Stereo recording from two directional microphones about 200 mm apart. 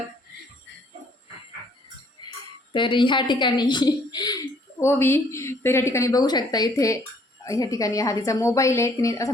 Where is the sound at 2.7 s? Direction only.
25° left (ahead or behind).